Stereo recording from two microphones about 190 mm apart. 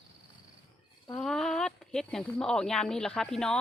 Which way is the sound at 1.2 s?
Centre (ahead or behind).